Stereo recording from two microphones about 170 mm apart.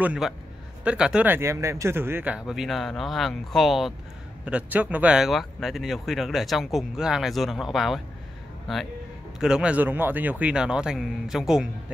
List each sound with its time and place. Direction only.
0.0 s a man's voice: 5° right (ahead or behind)
9.4 s speech: 5° right (ahead or behind)